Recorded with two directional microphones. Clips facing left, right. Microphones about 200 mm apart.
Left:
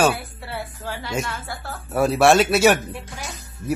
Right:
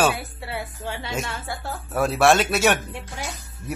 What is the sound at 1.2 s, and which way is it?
Speech, 25° right (ahead or behind).